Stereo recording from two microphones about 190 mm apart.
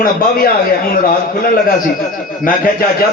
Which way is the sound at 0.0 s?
50° left (ahead or behind).